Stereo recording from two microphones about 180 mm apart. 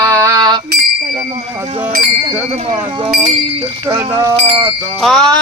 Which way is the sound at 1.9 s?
40° right (ahead or behind).